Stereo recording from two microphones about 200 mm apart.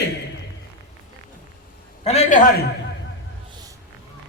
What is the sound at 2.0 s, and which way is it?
Speech, 35° left (ahead or behind).